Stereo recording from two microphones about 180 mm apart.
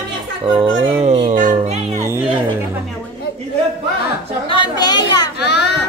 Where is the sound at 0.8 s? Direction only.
35° right (ahead or behind).